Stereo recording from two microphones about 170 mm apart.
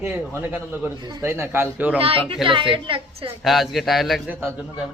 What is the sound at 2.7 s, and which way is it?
Speech, 30° right (ahead or behind).